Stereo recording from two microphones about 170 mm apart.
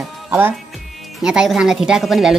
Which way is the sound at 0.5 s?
Centre (ahead or behind).